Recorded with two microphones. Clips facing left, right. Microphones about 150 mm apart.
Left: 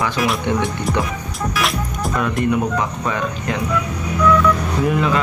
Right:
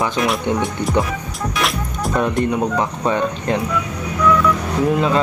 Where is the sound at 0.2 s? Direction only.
Centre (ahead or behind).